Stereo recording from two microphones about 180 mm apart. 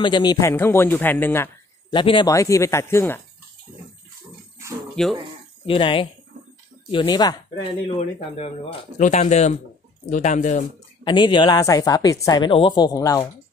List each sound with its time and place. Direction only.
0.0 s speech: 25° left (ahead or behind)
1.9 s a woman's voice: 25° left (ahead or behind)
2.3 s speech: 15° left (ahead or behind)
5.0 s speech: 5° left (ahead or behind)
5.7 s a woman's voice: 30° left (ahead or behind)
8.4 s speech: 40° left (ahead or behind)
11.1 s a woman's voice: 25° left (ahead or behind)